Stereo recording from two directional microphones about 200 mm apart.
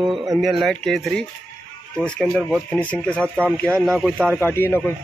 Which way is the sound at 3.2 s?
10° right (ahead or behind).